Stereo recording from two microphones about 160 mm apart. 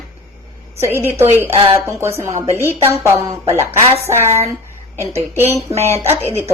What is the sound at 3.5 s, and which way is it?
Speech, 15° right (ahead or behind).